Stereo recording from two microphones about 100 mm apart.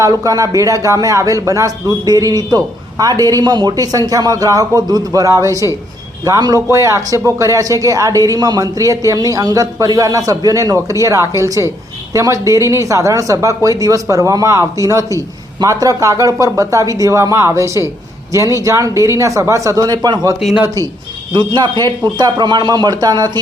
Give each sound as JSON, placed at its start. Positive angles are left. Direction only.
{"t": 0.0, "sound": "speech", "side_deg": -35}
{"t": 21.3, "sound": "speech", "side_deg": -50}